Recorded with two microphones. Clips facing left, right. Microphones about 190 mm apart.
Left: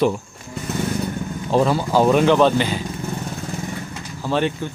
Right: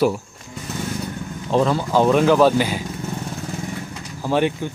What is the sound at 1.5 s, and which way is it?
Speech, 10° left (ahead or behind).